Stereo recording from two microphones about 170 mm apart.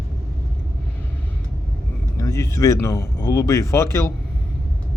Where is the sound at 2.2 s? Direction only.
20° left (ahead or behind).